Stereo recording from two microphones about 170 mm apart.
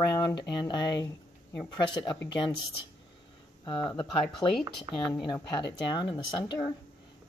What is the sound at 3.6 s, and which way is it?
Speech, 30° left (ahead or behind).